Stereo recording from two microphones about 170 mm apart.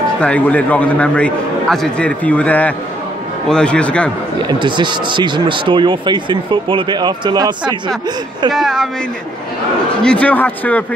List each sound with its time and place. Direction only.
0.2 s a man's voice: 10° left (ahead or behind)
4.4 s speech: 25° right (ahead or behind)
8.5 s a man's voice: centre (ahead or behind)
10.0 s a man's voice: 10° left (ahead or behind)